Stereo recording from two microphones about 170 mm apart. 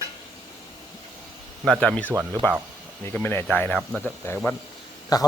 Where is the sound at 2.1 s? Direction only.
15° right (ahead or behind).